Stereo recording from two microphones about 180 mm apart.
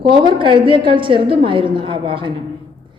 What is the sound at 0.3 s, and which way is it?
A woman's voice, 25° right (ahead or behind).